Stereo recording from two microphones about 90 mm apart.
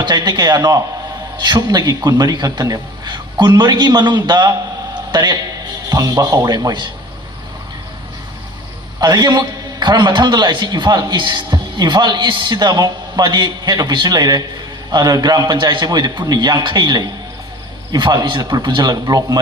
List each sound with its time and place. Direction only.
0.0 s a man's voice: 55° right (ahead or behind)
9.0 s a man's voice: 50° right (ahead or behind)